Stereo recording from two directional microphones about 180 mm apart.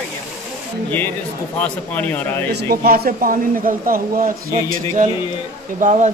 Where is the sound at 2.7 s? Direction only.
60° right (ahead or behind); by 6.1 s 40° right (ahead or behind).